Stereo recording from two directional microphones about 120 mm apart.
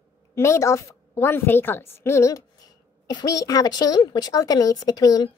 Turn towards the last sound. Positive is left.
turn(degrees=30)  # may be behind; listen again after turning